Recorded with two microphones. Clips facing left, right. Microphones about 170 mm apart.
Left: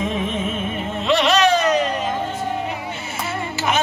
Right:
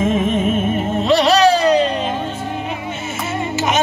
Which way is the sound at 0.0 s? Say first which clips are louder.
Right 7 dB; 45° right (ahead or behind).